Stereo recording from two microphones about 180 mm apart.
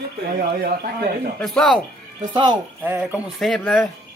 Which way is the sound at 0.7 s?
50° right (ahead or behind).